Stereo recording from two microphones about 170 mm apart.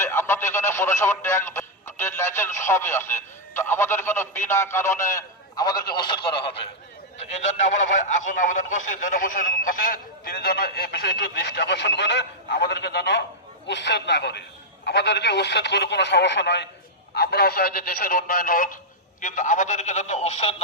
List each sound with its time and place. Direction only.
0.0 s speech: 15° left (ahead or behind); by 6.6 s 30° left (ahead or behind)
7.4 s speech: 45° left (ahead or behind); by 16.6 s 90° left
17.2 s speech: 70° left (ahead or behind); by 20.6 s 40° left (ahead or behind)